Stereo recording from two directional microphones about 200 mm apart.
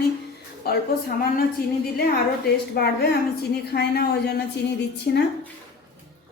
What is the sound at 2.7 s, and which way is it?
A woman's voice, 50° left (ahead or behind).